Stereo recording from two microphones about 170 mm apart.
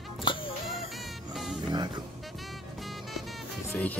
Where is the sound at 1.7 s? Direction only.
25° right (ahead or behind).